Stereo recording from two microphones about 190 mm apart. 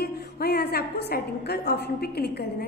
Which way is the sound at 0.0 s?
55° left (ahead or behind).